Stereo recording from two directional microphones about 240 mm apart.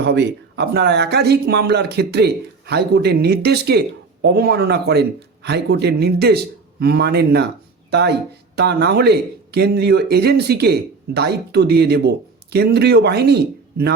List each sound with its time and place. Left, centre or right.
0.0 s speech: right